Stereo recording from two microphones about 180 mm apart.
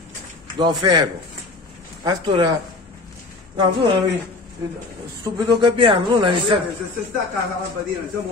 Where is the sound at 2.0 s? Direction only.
25° right (ahead or behind).